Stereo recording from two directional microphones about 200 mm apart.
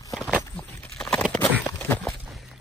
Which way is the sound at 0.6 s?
5° left (ahead or behind).